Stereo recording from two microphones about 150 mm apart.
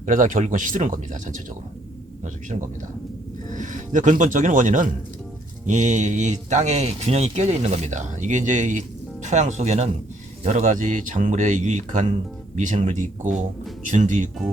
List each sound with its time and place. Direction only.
0.0 s speech: 60° right (ahead or behind)
13.2 s speech: centre (ahead or behind)
13.8 s speech: 55° right (ahead or behind)